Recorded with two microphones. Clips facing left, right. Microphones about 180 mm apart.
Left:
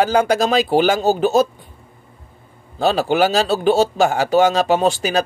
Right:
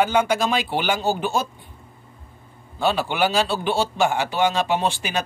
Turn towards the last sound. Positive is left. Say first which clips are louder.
# left 7 dB
turn(degrees=40)  # may be behind; listen again after turning